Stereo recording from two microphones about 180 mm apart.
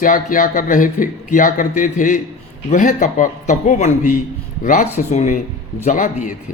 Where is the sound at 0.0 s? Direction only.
50° left (ahead or behind).